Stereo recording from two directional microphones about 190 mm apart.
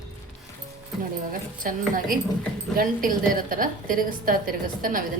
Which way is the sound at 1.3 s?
45° right (ahead or behind).